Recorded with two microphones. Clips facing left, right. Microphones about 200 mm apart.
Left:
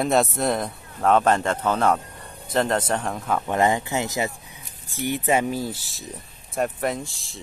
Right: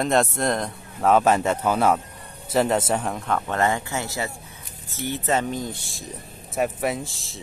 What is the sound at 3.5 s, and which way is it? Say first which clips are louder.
Speech: left 4 dB; 15° left (ahead or behind).